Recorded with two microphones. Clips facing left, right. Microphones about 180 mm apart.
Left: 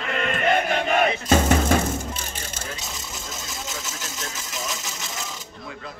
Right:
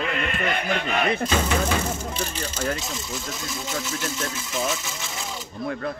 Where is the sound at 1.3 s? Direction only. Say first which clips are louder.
Left 4 dB; 45° left (ahead or behind).